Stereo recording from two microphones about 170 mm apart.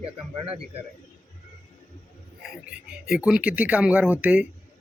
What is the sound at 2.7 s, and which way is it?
Speech, 5° right (ahead or behind).